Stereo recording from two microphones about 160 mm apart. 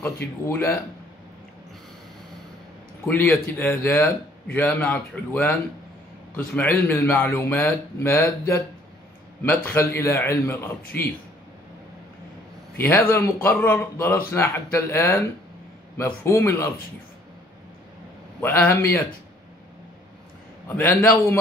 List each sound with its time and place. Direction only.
0.0 s a man's voice: 15° left (ahead or behind)
3.1 s a man's voice: 10° left (ahead or behind)
12.7 s a man's voice: 15° left (ahead or behind)
18.4 s a man's voice: 15° left (ahead or behind)
20.6 s a man's voice: 15° left (ahead or behind)